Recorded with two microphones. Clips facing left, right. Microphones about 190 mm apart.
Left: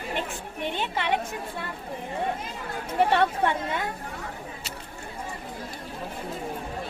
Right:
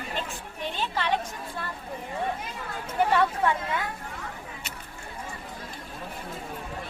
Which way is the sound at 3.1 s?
25° left (ahead or behind).